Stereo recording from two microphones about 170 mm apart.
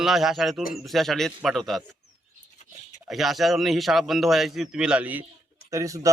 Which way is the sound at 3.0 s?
Centre (ahead or behind).